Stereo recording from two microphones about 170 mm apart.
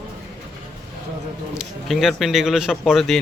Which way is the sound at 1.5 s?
Centre (ahead or behind).